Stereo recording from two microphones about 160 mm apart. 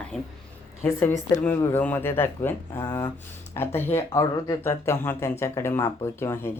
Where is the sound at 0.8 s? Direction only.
15° left (ahead or behind).